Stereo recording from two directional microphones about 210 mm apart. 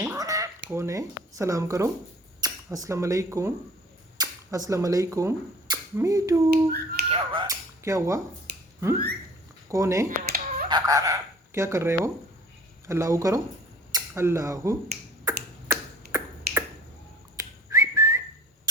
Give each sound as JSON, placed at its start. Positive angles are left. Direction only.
{"t": 0.0, "sound": "a sound", "side_deg": -15}
{"t": 0.7, "sound": "speech", "side_deg": -15}
{"t": 6.5, "sound": "speech", "side_deg": -50}
{"t": 7.1, "sound": "speech", "side_deg": -25}
{"t": 9.6, "sound": "speech", "side_deg": -15}
{"t": 10.1, "sound": "a sound", "side_deg": -45}
{"t": 10.7, "sound": "speech", "side_deg": -20}
{"t": 15.2, "sound": "finger snapping", "side_deg": -15}
{"t": 16.5, "sound": "finger snapping", "side_deg": -45}
{"t": 17.3, "sound": "whistling", "side_deg": -15}